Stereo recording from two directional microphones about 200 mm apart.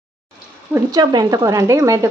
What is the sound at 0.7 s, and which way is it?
Speech, 20° right (ahead or behind).